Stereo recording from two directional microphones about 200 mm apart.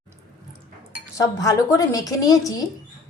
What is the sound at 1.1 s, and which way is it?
A woman's voice, 15° left (ahead or behind).